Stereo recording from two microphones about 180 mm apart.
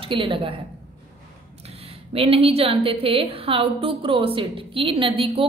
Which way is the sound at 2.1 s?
30° right (ahead or behind).